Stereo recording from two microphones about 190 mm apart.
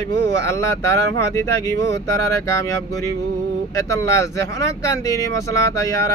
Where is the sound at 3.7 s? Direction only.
15° left (ahead or behind).